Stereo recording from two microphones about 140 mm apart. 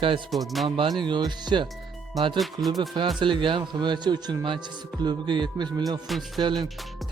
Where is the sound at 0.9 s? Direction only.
35° right (ahead or behind).